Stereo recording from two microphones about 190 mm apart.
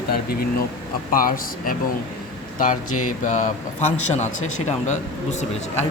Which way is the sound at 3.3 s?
40° left (ahead or behind).